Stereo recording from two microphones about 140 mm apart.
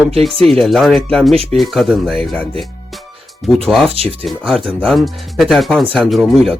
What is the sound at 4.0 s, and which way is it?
Speech, 45° right (ahead or behind).